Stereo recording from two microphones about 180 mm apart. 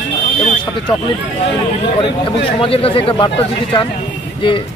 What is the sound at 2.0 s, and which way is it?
Speech, 30° left (ahead or behind).